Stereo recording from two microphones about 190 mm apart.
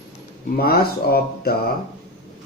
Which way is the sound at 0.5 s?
55° left (ahead or behind).